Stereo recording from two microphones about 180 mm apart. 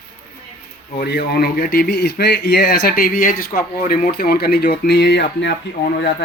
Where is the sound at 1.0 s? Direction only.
60° left (ahead or behind).